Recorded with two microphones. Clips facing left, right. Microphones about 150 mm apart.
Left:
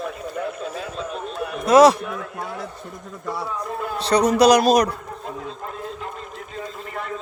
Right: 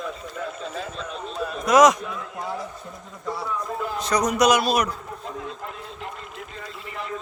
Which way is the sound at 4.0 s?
30° left (ahead or behind).